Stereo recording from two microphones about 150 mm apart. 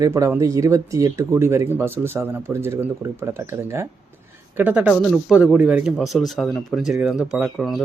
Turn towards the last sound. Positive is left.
turn(degrees=-5)  # may be behind; listen again after turning